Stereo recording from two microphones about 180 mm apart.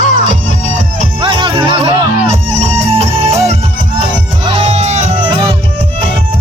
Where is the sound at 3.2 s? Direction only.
15° right (ahead or behind).